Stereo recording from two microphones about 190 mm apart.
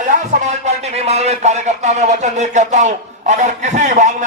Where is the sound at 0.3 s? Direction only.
40° right (ahead or behind).